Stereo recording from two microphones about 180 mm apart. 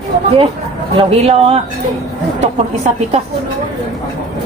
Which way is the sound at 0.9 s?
35° right (ahead or behind).